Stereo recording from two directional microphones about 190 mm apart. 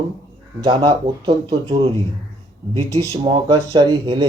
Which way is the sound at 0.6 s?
25° right (ahead or behind).